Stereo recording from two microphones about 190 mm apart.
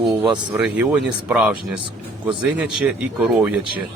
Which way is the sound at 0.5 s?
10° right (ahead or behind).